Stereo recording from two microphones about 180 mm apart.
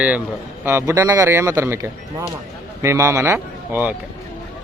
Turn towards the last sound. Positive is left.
turn(degrees=-15)  # may be behind; listen again after turning